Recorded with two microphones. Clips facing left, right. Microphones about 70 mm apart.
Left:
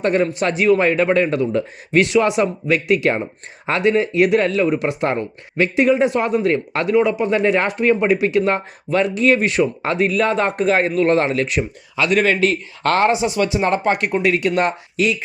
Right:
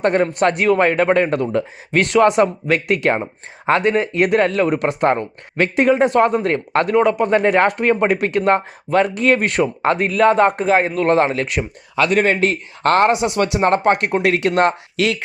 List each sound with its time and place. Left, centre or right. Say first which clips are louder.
0.0 s speech: right 2 dB; right
3.7 s speech: right 1 dB; right; by 10.9 s centre
10.9 s speech: even; right
11.4 s speech: left 1 dB; right
13.1 s speech: right 1 dB; right
13.6 s speech: right 5 dB; right
14.4 s speech: right 3 dB; right